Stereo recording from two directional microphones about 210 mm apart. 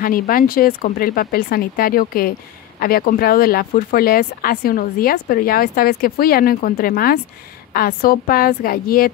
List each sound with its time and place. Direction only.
0.0 s speech: 45° left (ahead or behind)